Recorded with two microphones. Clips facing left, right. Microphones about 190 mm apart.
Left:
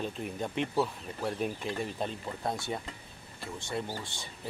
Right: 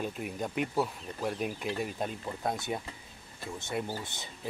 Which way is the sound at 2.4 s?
20° right (ahead or behind).